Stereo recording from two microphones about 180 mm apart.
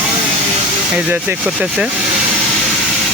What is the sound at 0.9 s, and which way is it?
Speech, 10° right (ahead or behind).